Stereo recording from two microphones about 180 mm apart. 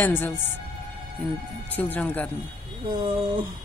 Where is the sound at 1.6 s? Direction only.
10° left (ahead or behind).